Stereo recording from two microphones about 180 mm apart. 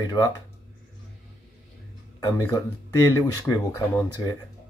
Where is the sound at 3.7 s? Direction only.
15° left (ahead or behind).